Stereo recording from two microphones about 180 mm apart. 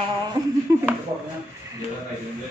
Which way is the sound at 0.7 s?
15° right (ahead or behind).